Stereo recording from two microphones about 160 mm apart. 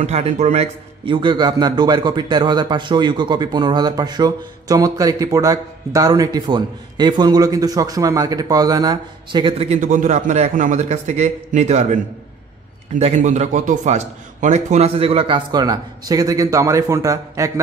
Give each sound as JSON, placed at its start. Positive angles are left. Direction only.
{"t": 0.0, "sound": "a man's voice", "side_deg": -45}
{"t": 1.0, "sound": "a man's voice", "side_deg": -30}